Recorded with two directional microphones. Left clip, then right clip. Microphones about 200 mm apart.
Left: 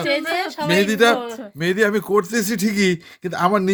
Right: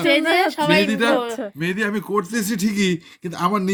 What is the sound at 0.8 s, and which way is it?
A man's voice, 55° left (ahead or behind).